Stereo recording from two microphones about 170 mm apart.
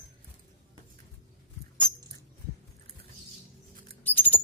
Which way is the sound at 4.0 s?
10° left (ahead or behind).